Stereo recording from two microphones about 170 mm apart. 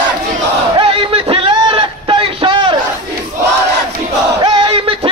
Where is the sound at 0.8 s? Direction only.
30° right (ahead or behind).